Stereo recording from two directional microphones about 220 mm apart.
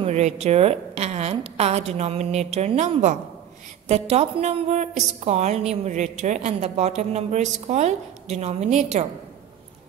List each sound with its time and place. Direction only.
0.0 s a woman's voice: 30° right (ahead or behind)